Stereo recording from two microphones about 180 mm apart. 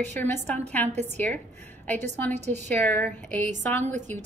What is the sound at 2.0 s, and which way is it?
Speech, 40° right (ahead or behind).